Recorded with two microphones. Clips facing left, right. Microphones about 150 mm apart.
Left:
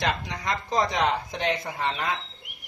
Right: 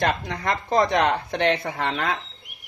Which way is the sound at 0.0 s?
55° right (ahead or behind).